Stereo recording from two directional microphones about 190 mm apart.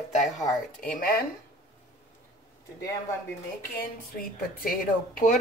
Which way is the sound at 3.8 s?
50° left (ahead or behind).